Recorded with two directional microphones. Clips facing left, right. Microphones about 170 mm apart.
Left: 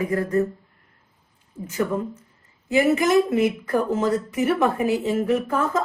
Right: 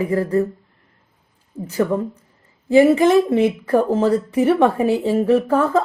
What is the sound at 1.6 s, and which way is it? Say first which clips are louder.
Speech: right 5 dB; 35° right (ahead or behind).